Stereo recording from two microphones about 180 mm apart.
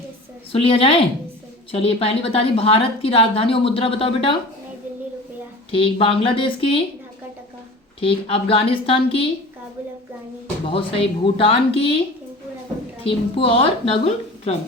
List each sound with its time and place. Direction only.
0.5 s a woman's voice: 30° left (ahead or behind)
5.7 s a woman's voice: 30° left (ahead or behind)
8.0 s a woman's voice: 30° left (ahead or behind)
10.7 s a woman's voice: 30° left (ahead or behind)
13.0 s a woman's voice: 30° left (ahead or behind)